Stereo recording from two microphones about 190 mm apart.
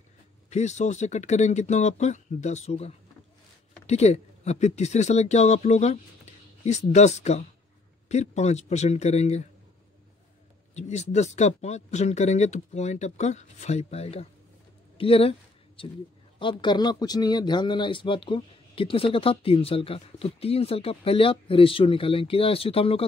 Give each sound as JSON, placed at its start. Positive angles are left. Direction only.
{"t": 0.5, "sound": "speech", "side_deg": 35}
{"t": 10.7, "sound": "speech", "side_deg": 35}
{"t": 15.0, "sound": "a sound", "side_deg": 30}
{"t": 16.3, "sound": "speech", "side_deg": 25}